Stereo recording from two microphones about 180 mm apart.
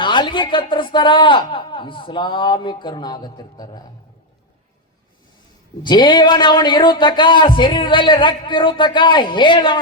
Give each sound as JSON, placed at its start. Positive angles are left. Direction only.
{"t": 0.0, "sound": "speech", "side_deg": 25}
{"t": 5.8, "sound": "speech", "side_deg": 25}